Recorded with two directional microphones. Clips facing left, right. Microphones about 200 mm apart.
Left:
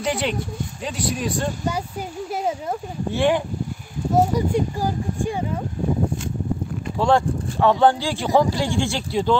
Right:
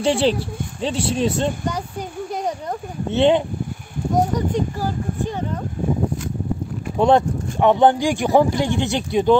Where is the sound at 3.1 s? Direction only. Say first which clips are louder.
Right 4 dB; 20° right (ahead or behind).